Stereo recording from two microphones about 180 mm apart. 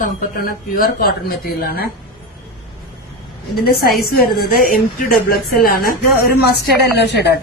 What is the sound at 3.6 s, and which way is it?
Speech, 60° left (ahead or behind).